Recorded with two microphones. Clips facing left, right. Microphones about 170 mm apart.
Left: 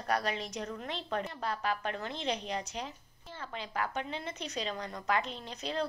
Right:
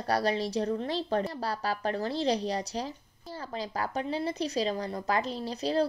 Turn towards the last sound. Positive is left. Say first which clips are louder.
# right 8 dB
turn(degrees=-35)  # may be behind; listen again after turning